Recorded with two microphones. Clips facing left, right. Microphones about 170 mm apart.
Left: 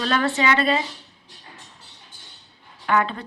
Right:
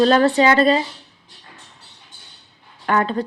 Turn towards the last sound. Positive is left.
turn(degrees=-40)  # may be behind; listen again after turning